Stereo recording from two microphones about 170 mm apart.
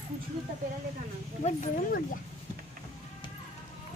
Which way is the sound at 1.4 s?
40° left (ahead or behind).